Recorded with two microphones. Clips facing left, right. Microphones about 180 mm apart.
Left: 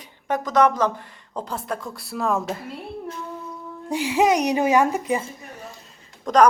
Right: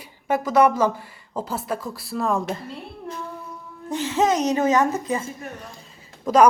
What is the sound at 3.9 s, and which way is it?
A woman's voice, 10° left (ahead or behind).